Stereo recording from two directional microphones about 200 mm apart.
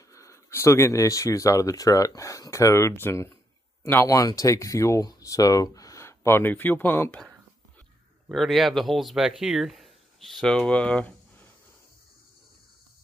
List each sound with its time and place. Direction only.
0.1 s speech: 15° left (ahead or behind)
8.3 s speech: centre (ahead or behind)